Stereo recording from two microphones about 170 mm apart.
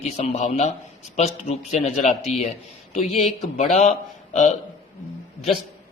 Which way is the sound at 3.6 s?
40° left (ahead or behind).